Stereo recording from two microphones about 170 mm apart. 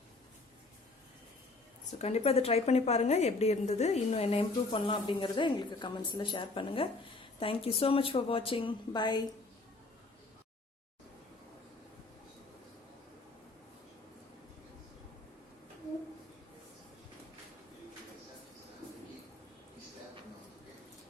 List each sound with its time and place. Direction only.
2.0 s a woman's voice: 40° left (ahead or behind)